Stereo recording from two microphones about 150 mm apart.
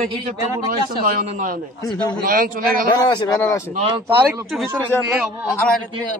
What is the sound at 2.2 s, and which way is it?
Speech, 70° right (ahead or behind).